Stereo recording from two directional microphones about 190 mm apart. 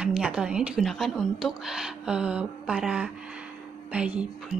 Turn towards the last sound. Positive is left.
turn(degrees=-45)  # may be behind; listen again after turning